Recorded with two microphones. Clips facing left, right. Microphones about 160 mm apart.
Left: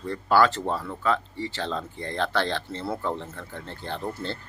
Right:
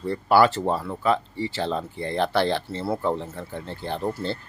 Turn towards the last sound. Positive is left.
turn(degrees=-15)  # may be behind; listen again after turning